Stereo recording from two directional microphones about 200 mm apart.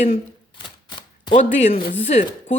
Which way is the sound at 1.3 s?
35° left (ahead or behind).